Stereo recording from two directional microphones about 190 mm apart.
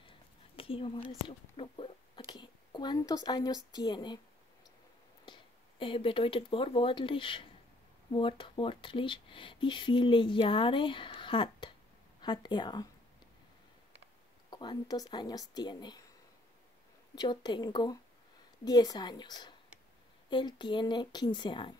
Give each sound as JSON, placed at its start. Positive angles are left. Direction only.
{"t": 0.6, "sound": "a woman's voice", "side_deg": 30}
{"t": 5.2, "sound": "speech", "side_deg": 25}
{"t": 14.5, "sound": "speech", "side_deg": 25}
{"t": 17.1, "sound": "speech", "side_deg": 20}